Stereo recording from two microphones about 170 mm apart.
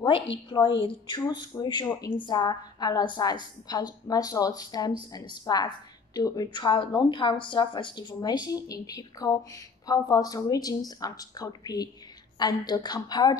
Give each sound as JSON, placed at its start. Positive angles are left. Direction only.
{"t": 0.5, "sound": "a woman's voice", "side_deg": 25}